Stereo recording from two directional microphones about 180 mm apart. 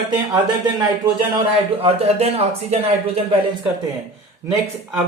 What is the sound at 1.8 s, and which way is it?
Speech, 35° right (ahead or behind).